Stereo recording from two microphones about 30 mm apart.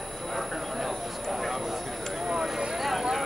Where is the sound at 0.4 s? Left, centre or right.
Centre.